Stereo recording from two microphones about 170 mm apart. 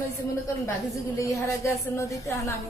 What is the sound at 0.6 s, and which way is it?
A woman's voice, 20° left (ahead or behind).